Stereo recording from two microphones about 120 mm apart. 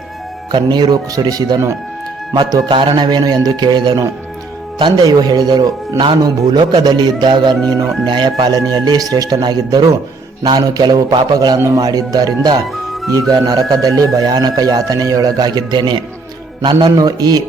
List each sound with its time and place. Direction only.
0.5 s speech: 35° right (ahead or behind)
7.7 s speech: 25° right (ahead or behind)
8.0 s speech: 40° right (ahead or behind)